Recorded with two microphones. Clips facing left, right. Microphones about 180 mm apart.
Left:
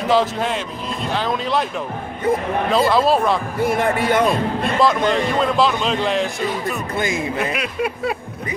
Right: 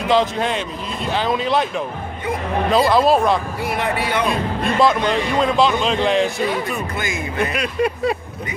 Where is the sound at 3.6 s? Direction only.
45° left (ahead or behind).